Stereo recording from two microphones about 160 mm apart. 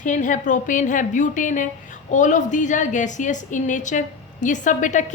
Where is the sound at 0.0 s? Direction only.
50° left (ahead or behind).